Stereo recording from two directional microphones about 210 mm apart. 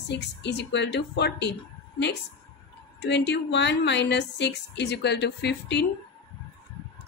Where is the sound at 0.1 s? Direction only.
55° left (ahead or behind).